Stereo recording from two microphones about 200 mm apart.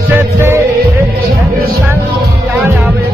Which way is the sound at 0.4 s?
10° right (ahead or behind).